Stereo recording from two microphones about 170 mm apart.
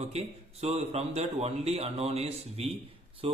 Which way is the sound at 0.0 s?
40° right (ahead or behind).